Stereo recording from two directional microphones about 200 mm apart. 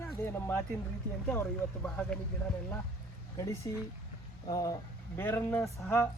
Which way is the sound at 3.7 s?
15° left (ahead or behind).